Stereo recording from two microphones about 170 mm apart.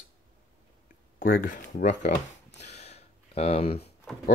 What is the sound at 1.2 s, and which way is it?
Speech, 55° left (ahead or behind).